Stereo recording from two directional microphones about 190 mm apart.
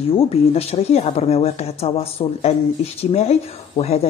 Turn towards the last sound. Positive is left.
turn(degrees=35)  # may be behind; listen again after turning